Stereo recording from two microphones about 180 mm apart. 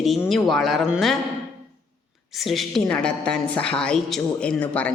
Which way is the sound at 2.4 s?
Centre (ahead or behind).